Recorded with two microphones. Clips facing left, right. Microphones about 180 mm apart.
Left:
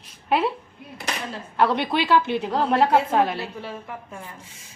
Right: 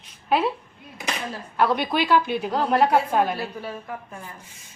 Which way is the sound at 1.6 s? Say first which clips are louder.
Left 1 dB; 25° left (ahead or behind).